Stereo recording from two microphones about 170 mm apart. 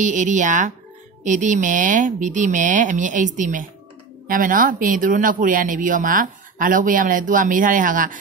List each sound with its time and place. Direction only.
0.0 s a man's voice: 45° right (ahead or behind)